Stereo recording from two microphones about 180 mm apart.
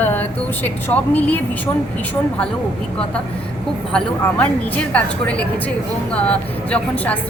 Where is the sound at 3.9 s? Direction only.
5° left (ahead or behind).